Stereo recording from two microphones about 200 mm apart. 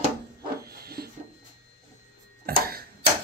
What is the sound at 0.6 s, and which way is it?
Dog, 50° right (ahead or behind).